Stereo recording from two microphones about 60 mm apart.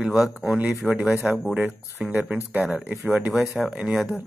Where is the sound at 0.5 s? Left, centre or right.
Right.